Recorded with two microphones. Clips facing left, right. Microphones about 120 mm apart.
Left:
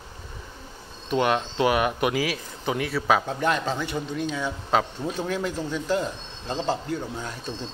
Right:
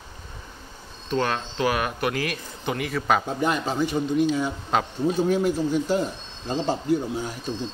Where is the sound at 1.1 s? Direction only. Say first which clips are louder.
Left 2 dB; 15° left (ahead or behind).